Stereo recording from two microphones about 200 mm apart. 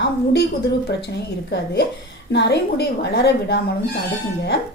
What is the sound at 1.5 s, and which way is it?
A woman's voice, 55° left (ahead or behind).